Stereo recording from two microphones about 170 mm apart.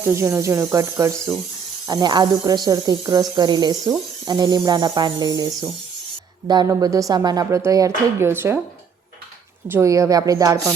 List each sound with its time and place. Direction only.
0.0 s speech: 15° right (ahead or behind)
9.6 s speech: 15° right (ahead or behind)